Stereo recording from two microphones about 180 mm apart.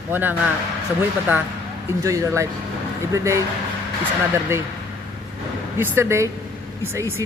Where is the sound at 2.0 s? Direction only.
15° right (ahead or behind).